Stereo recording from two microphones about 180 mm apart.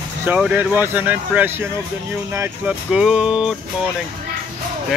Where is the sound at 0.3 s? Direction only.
5° right (ahead or behind).